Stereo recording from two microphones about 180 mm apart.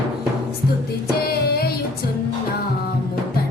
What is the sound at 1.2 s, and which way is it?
Music, 60° left (ahead or behind).